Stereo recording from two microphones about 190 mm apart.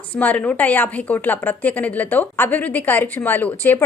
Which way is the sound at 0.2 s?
10° left (ahead or behind).